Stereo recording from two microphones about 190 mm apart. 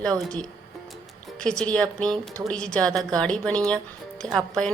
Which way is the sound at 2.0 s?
15° right (ahead or behind).